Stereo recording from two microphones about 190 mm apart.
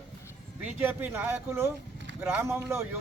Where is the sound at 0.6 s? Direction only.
10° right (ahead or behind).